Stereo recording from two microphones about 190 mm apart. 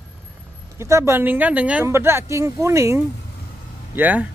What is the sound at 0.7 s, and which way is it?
Speech, 15° right (ahead or behind).